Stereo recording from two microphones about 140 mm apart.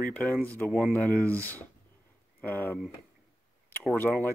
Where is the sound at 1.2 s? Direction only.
10° left (ahead or behind).